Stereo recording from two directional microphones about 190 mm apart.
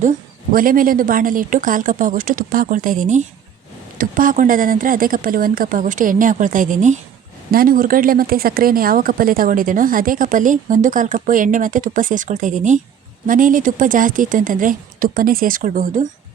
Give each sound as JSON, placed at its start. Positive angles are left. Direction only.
{"t": 0.5, "sound": "a woman's voice", "side_deg": -50}